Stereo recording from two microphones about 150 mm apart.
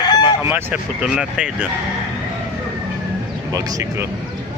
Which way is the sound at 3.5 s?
25° right (ahead or behind).